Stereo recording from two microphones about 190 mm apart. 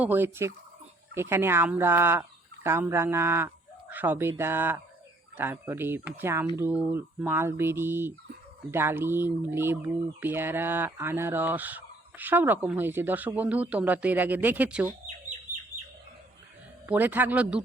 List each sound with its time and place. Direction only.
0.0 s fowl: 10° right (ahead or behind)
2.6 s speech: 10° right (ahead or behind)
5.4 s fowl: 10° right (ahead or behind)
16.8 s fowl: 10° right (ahead or behind)